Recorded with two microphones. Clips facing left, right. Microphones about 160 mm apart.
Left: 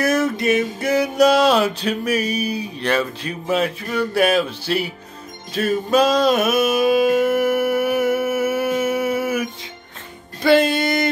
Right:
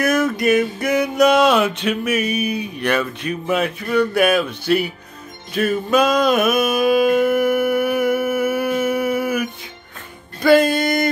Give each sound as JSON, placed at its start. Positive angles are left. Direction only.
{"t": 0.0, "sound": "music", "side_deg": 30}
{"t": 6.8, "sound": "humming", "side_deg": 25}
{"t": 10.4, "sound": "music", "side_deg": 25}